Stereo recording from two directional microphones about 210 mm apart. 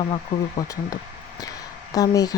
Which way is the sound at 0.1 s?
20° left (ahead or behind).